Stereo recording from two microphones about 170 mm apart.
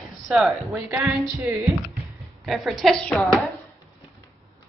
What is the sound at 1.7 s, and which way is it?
A woman's voice, centre (ahead or behind).